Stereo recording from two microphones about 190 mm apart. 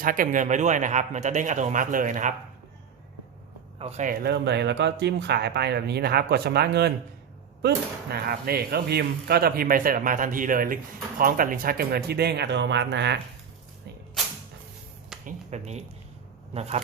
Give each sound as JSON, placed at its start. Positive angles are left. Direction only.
{"t": 0.0, "sound": "speech", "side_deg": -45}
{"t": 3.8, "sound": "speech", "side_deg": -35}
{"t": 4.1, "sound": "speech", "side_deg": -60}
{"t": 8.1, "sound": "speech", "side_deg": -55}
{"t": 15.2, "sound": "speech", "side_deg": -40}